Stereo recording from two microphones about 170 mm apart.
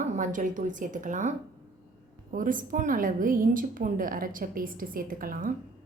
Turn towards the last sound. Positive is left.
turn(degrees=-55)  # may be behind; listen again after turning